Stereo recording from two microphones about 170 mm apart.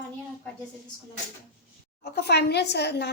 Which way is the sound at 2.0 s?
75° left (ahead or behind).